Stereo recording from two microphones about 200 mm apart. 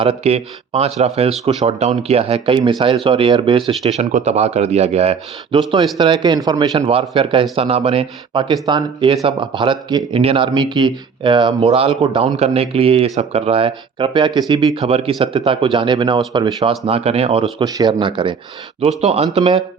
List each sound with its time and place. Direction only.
0.0 s speech: 30° right (ahead or behind)